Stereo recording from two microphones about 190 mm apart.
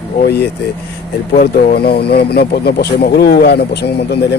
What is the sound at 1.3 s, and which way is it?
Speech, 50° left (ahead or behind).